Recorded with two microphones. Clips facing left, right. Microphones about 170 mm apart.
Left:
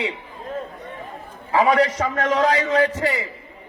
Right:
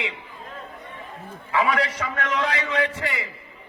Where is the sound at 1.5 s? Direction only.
35° left (ahead or behind).